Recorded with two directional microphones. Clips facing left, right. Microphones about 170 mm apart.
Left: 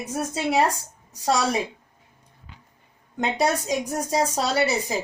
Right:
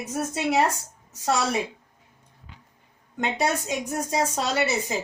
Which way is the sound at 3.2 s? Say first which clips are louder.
Left 2 dB; 35° left (ahead or behind).